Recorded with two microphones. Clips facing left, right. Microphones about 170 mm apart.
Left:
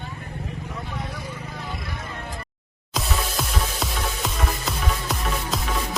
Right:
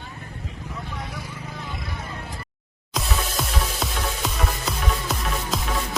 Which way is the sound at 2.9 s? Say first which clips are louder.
Even; centre (ahead or behind).